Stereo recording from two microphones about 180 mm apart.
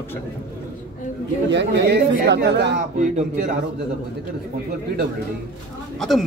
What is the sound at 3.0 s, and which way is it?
Speech, 40° right (ahead or behind).